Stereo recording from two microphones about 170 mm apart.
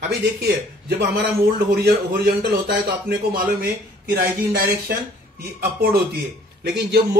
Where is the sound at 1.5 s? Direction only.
65° right (ahead or behind).